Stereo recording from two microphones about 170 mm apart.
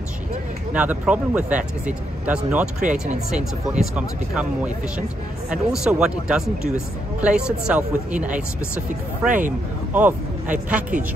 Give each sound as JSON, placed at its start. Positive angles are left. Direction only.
{"t": 0.7, "sound": "speech", "side_deg": -10}
{"t": 2.8, "sound": "speech", "side_deg": -45}
{"t": 3.3, "sound": "speech", "side_deg": -5}
{"t": 10.7, "sound": "speech", "side_deg": -10}